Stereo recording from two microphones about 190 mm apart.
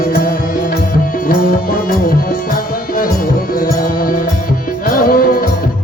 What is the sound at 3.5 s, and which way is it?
Music, 50° left (ahead or behind).